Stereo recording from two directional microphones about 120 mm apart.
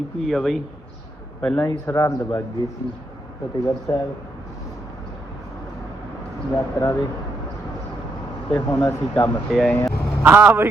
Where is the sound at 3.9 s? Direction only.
25° left (ahead or behind).